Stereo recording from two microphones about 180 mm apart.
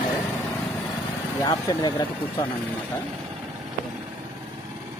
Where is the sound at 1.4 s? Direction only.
20° left (ahead or behind).